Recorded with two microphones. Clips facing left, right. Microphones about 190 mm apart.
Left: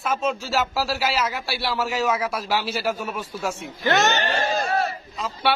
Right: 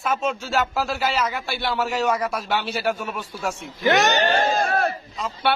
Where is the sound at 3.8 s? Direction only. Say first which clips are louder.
Right 2 dB; 15° right (ahead or behind).